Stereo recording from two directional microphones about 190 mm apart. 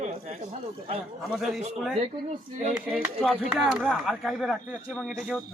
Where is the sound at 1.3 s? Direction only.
5° right (ahead or behind).